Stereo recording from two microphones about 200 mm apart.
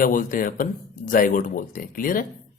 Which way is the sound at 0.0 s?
45° left (ahead or behind).